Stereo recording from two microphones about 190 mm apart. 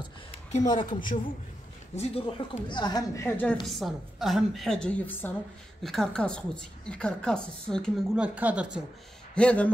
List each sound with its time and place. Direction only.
0.7 s a woman's voice: 25° left (ahead or behind)
3.6 s a woman's voice: centre (ahead or behind)
8.4 s speech: 5° right (ahead or behind)
9.3 s speech: 5° left (ahead or behind)